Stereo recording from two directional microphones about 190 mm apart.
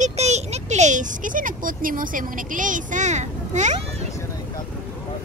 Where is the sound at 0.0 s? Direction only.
35° right (ahead or behind).